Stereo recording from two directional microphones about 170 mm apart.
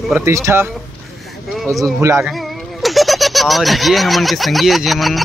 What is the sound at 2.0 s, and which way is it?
Speech, 20° right (ahead or behind).